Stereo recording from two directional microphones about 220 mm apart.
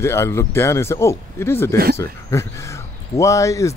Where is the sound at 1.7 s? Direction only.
45° right (ahead or behind).